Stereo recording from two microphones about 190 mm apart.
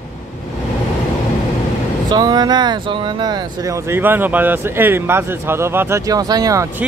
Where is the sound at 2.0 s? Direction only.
20° right (ahead or behind).